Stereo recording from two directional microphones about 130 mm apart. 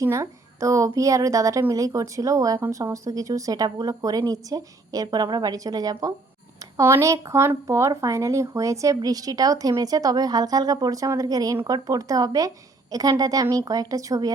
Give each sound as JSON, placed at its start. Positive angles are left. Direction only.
{"t": 0.0, "sound": "speech", "side_deg": -25}